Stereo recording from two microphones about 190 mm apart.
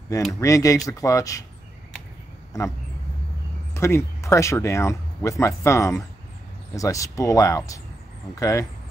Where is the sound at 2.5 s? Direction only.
20° left (ahead or behind).